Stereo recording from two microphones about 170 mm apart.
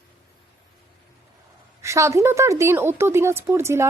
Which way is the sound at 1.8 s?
15° right (ahead or behind).